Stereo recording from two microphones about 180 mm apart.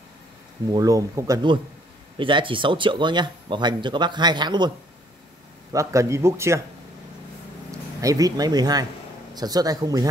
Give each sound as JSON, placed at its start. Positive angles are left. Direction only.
{"t": 0.7, "sound": "a man's voice", "side_deg": -20}
{"t": 8.0, "sound": "speech", "side_deg": -20}